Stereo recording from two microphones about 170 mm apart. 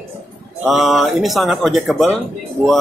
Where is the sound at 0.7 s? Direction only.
Centre (ahead or behind).